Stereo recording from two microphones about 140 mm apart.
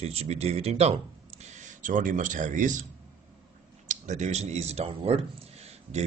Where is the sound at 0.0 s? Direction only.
45° right (ahead or behind).